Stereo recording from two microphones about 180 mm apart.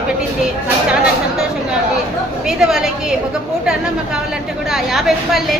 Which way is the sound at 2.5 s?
5° right (ahead or behind).